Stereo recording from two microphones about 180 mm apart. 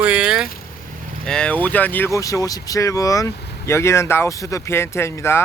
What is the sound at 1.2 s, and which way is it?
Speech, 5° left (ahead or behind).